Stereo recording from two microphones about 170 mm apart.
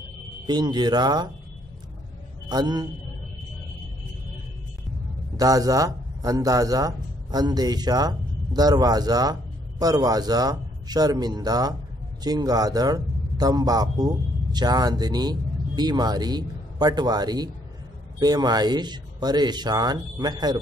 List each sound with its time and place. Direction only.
0.5 s speech: 25° right (ahead or behind)
2.5 s speech: 25° right (ahead or behind)
5.4 s a man's voice: 20° right (ahead or behind)